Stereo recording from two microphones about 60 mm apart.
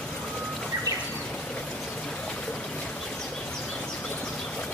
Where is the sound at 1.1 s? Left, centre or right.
Centre.